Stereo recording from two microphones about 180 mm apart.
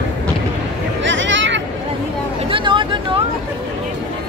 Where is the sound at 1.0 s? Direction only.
90° right.